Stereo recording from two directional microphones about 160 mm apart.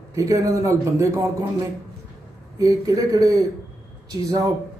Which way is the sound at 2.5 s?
20° right (ahead or behind).